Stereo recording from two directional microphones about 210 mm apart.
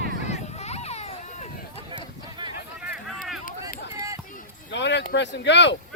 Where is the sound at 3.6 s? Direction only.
15° right (ahead or behind).